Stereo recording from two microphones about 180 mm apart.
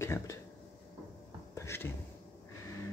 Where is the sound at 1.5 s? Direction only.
15° left (ahead or behind).